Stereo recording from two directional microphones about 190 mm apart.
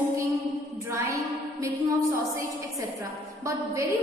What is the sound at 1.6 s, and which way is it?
Speech, 15° right (ahead or behind).